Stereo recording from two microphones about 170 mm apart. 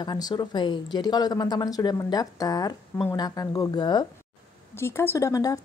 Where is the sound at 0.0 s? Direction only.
25° left (ahead or behind).